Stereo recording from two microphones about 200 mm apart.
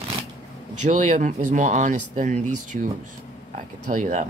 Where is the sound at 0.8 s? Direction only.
40° right (ahead or behind).